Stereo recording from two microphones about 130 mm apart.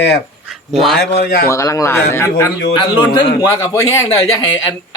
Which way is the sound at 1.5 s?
25° left (ahead or behind).